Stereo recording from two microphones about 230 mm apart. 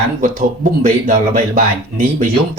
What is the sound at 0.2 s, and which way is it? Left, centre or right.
Speech, right.